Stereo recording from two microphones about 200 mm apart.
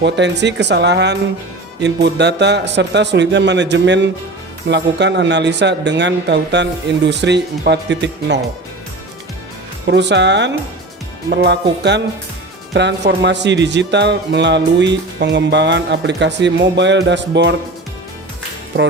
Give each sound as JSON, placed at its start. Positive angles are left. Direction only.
{"t": 0.0, "sound": "speech", "side_deg": -60}
{"t": 9.8, "sound": "speech", "side_deg": -60}